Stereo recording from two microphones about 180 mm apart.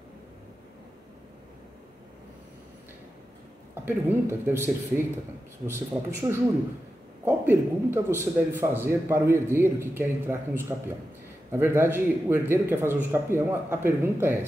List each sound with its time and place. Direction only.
3.7 s speech: 15° right (ahead or behind)